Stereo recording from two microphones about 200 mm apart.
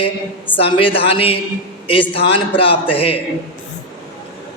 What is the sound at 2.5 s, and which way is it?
Speech, 25° left (ahead or behind).